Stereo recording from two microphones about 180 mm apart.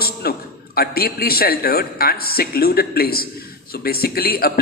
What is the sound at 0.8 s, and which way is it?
A man's voice, 55° left (ahead or behind).